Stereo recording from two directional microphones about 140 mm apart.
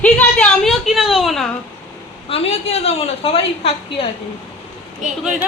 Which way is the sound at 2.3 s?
45° left (ahead or behind).